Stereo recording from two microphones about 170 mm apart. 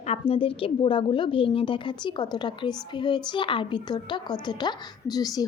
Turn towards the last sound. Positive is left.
turn(degrees=20)  # may be behind; listen again after turning